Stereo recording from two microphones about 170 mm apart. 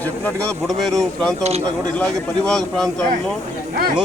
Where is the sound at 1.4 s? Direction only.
40° right (ahead or behind).